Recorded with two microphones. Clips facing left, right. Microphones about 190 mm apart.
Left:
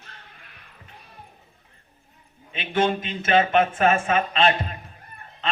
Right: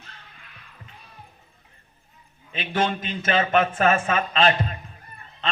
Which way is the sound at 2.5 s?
35° right (ahead or behind).